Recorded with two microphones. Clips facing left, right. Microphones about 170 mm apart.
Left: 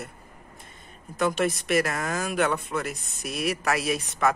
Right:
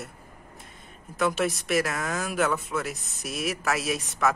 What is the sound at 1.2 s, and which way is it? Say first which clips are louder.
Speech: left 1 dB; centre (ahead or behind).